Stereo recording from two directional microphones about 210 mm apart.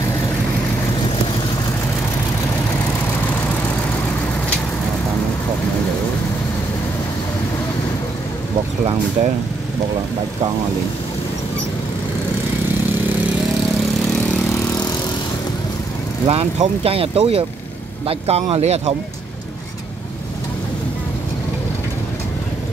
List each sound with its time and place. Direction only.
16.3 s speech: 30° right (ahead or behind)